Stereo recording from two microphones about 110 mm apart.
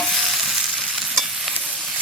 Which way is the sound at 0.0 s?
Centre (ahead or behind).